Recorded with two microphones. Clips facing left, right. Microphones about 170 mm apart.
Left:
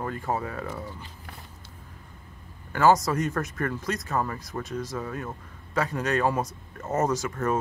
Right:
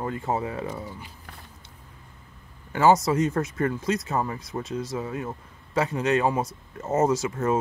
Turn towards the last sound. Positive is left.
turn(degrees=-25)  # may be behind; listen again after turning